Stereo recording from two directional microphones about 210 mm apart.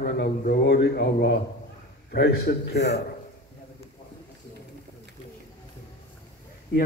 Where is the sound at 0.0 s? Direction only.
40° left (ahead or behind).